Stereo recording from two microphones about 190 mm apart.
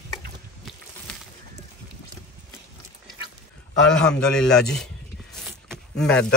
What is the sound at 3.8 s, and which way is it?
A man's voice, 5° left (ahead or behind).